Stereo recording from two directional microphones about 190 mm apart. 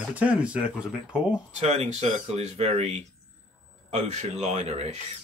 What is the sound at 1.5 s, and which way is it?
Speech, 35° right (ahead or behind).